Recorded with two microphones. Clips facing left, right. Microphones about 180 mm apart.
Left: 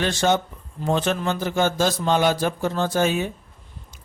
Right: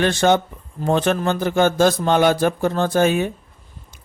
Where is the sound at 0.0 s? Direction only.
55° right (ahead or behind).